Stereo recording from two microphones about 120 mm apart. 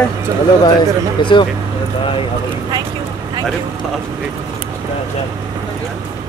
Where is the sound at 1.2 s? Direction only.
40° left (ahead or behind).